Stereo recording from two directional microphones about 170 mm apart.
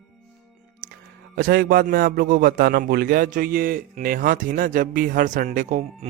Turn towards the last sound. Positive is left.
turn(degrees=-50)  # may be behind; listen again after turning